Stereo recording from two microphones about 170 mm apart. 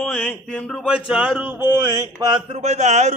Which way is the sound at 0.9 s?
5° right (ahead or behind).